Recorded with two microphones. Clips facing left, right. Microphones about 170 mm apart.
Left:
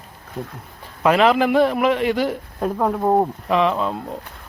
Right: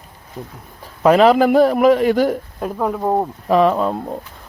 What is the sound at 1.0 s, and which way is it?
A man's voice, 40° right (ahead or behind).